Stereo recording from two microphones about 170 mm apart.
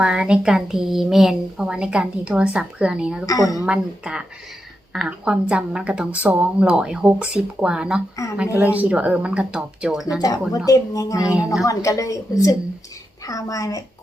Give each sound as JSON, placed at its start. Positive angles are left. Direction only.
{"t": 0.0, "sound": "a woman's voice", "side_deg": -5}
{"t": 3.2, "sound": "a woman's voice", "side_deg": 20}
{"t": 3.7, "sound": "a woman's voice", "side_deg": -5}
{"t": 8.1, "sound": "a woman's voice", "side_deg": 20}
{"t": 8.5, "sound": "speech", "side_deg": -10}
{"t": 10.7, "sound": "a woman's voice", "side_deg": 20}